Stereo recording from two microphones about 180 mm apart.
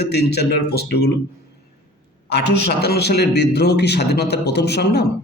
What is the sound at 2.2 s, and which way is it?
A man's voice, 70° left (ahead or behind).